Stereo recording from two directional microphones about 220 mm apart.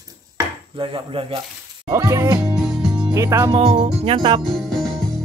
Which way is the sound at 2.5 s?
Centre (ahead or behind).